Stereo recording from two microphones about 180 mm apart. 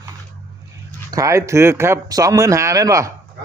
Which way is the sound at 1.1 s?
20° right (ahead or behind).